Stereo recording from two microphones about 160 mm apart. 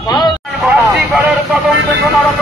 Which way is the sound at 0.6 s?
5° right (ahead or behind).